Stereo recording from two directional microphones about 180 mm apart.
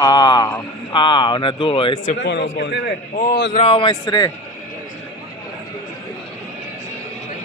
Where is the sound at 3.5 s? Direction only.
30° left (ahead or behind).